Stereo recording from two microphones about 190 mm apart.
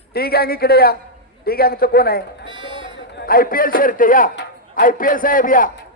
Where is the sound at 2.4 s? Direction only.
25° right (ahead or behind).